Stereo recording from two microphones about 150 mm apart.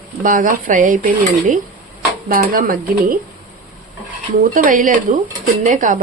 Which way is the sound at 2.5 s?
70° right (ahead or behind).